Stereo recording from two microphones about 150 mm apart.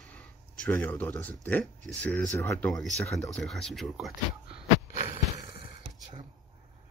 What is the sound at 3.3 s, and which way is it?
Speech, centre (ahead or behind).